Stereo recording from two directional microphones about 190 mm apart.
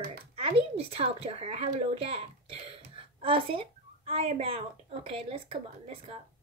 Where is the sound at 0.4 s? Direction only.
30° right (ahead or behind).